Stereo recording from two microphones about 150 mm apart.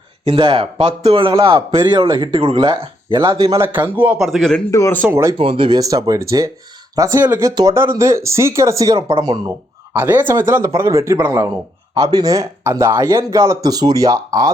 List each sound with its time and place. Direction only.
0.3 s speech: 35° right (ahead or behind)
3.5 s speech: 15° right (ahead or behind)
4.2 s a man's voice: centre (ahead or behind)
4.7 s speech: 20° left (ahead or behind)
5.1 s speech: 20° right (ahead or behind)
5.4 s speech: 35° right (ahead or behind)